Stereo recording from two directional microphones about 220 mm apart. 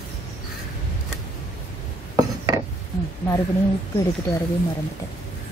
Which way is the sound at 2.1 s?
15° right (ahead or behind).